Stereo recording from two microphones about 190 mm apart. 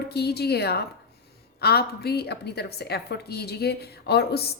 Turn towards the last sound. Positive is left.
turn(degrees=60)  # may be behind; listen again after turning